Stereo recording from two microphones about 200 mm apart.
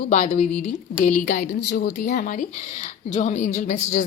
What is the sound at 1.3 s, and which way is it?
A woman's voice, 50° left (ahead or behind).